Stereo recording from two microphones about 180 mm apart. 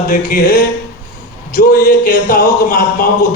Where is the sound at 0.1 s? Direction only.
50° left (ahead or behind).